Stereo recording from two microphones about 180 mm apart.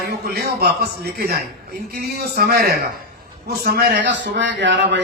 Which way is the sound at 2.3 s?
60° right (ahead or behind).